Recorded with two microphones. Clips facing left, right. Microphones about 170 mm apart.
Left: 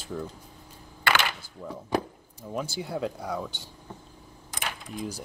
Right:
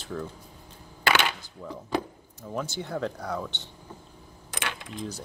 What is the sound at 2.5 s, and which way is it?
Speech, 10° left (ahead or behind).